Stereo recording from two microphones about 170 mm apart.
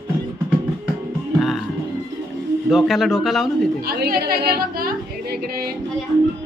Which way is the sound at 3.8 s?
60° right (ahead or behind).